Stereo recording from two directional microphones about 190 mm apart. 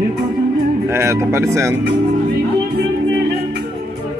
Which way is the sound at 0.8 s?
15° right (ahead or behind).